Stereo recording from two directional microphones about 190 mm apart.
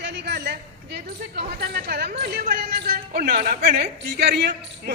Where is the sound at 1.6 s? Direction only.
55° right (ahead or behind).